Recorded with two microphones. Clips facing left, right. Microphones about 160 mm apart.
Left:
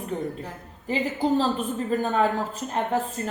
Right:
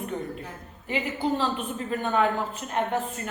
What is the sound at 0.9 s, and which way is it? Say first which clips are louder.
A woman's voice: left 3 dB; 40° left (ahead or behind).